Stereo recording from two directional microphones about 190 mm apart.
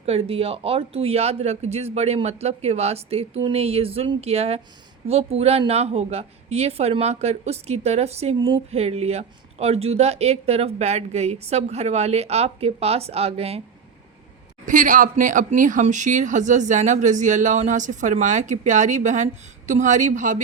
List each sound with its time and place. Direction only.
0.0 s a woman's voice: 30° right (ahead or behind)
14.7 s a woman's voice: 45° right (ahead or behind)